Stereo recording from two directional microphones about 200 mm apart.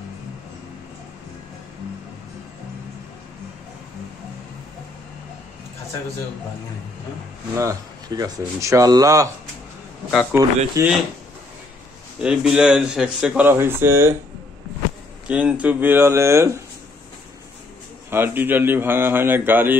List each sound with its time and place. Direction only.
7.5 s speech: 15° right (ahead or behind)
10.3 s speech: 10° right (ahead or behind)
12.2 s speech: 5° right (ahead or behind)
15.2 s speech: 5° right (ahead or behind)
18.1 s speech: 10° right (ahead or behind)